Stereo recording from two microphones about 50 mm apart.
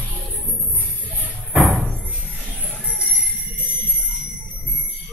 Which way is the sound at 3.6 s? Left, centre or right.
Right.